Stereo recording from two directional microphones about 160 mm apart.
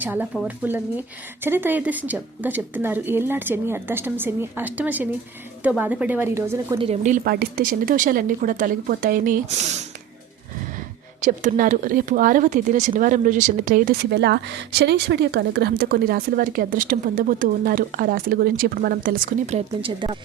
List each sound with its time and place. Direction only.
0.0 s a woman's voice: 10° right (ahead or behind)
6.7 s a woman's voice: 40° right (ahead or behind)
7.3 s speech: 70° right (ahead or behind)
19.5 s a woman's voice: 35° right (ahead or behind)